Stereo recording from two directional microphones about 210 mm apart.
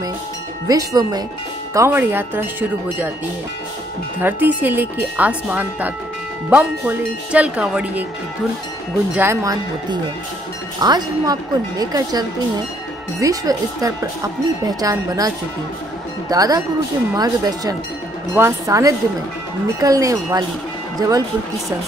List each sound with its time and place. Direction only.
0.7 s speech: 15° right (ahead or behind)
4.2 s speech: 10° right (ahead or behind)
9.1 s speech: 10° right (ahead or behind)